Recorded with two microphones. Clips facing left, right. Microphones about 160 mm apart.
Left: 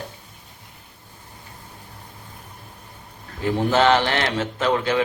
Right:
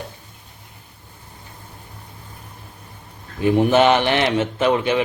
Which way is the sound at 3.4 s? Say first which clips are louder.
Right 4 dB; 15° right (ahead or behind).